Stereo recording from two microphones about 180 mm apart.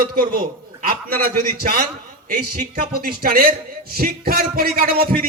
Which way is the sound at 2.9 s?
55° right (ahead or behind).